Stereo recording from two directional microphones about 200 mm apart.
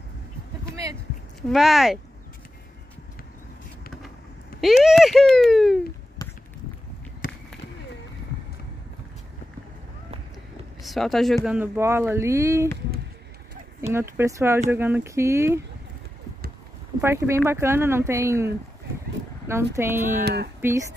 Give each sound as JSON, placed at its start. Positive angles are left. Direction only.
{"t": 1.5, "sound": "speech", "side_deg": 0}
{"t": 4.6, "sound": "a child's voice", "side_deg": 0}
{"t": 6.2, "sound": "run", "side_deg": 20}
{"t": 10.8, "sound": "speech", "side_deg": 0}
{"t": 13.9, "sound": "speech", "side_deg": -15}
{"t": 17.0, "sound": "speech", "side_deg": -15}